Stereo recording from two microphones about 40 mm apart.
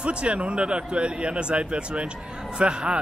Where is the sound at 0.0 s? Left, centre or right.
Right.